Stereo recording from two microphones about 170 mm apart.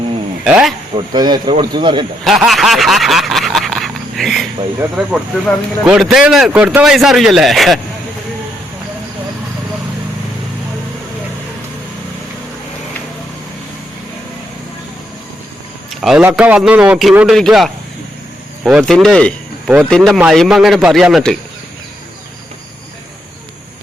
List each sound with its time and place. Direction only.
0.4 s speech: 5° right (ahead or behind)
1.1 s speech: 25° right (ahead or behind)
2.2 s a sound: centre (ahead or behind)
5.1 s speech: 5° right (ahead or behind)
15.9 s speech: 5° right (ahead or behind)